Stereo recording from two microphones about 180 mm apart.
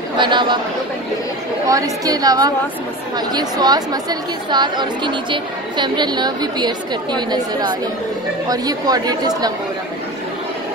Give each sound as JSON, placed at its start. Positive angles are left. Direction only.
{"t": 0.2, "sound": "a woman's voice", "side_deg": -25}
{"t": 1.7, "sound": "a woman's voice", "side_deg": -20}